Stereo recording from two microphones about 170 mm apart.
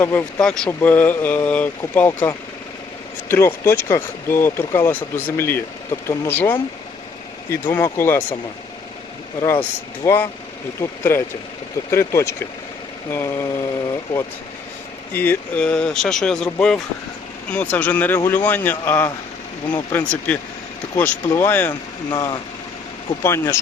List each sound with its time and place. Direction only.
0.0 s speech: 10° left (ahead or behind)
9.5 s speech: 15° left (ahead or behind)
15.1 s speech: 10° left (ahead or behind)
21.7 s speech: 25° left (ahead or behind)